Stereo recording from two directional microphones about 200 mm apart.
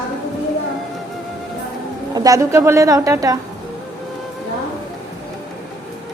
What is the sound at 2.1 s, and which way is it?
A woman's voice, 15° right (ahead or behind).